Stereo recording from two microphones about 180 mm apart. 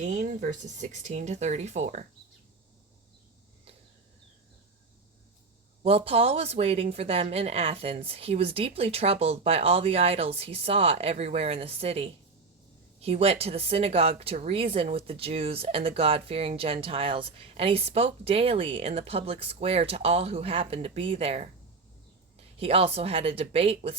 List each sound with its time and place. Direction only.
0.0 s speech: 45° right (ahead or behind)
5.8 s speech: 35° right (ahead or behind)